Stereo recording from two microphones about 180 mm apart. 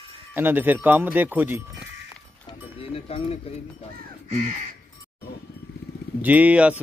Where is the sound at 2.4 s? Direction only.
30° left (ahead or behind).